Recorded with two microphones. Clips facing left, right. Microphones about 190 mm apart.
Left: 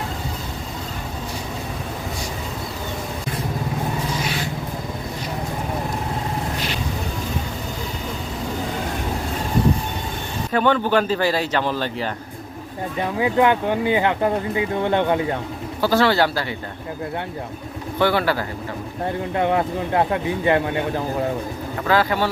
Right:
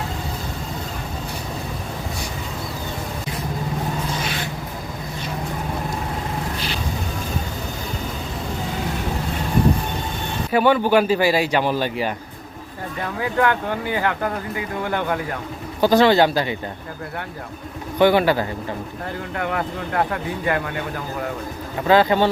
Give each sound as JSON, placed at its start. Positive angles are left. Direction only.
{"t": 10.5, "sound": "speech", "side_deg": -10}
{"t": 13.0, "sound": "speech", "side_deg": 20}
{"t": 15.8, "sound": "speech", "side_deg": -20}
{"t": 18.0, "sound": "speech", "side_deg": -15}
{"t": 19.4, "sound": "speech", "side_deg": 25}
{"t": 21.8, "sound": "speech", "side_deg": -20}